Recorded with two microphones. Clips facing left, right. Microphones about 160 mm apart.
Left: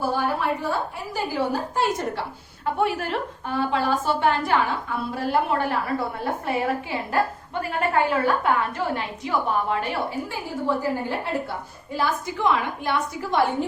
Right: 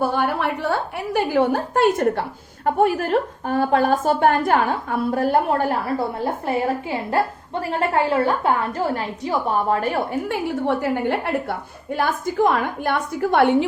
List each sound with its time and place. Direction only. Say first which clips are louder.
0.0 s a woman's voice: right 3 dB; 65° right (ahead or behind)
2.6 s a woman's voice: right 5 dB; 45° right (ahead or behind)
7.1 s a woman's voice: right 2 dB; 30° right (ahead or behind)
10.2 s a woman's voice: right 5 dB; 70° right (ahead or behind)
11.9 s a woman's voice: right 5 dB; 45° right (ahead or behind); by 13.7 s 70° right (ahead or behind)